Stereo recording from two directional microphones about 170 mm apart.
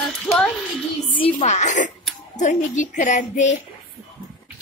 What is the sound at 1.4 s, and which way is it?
A woman's voice, 45° left (ahead or behind).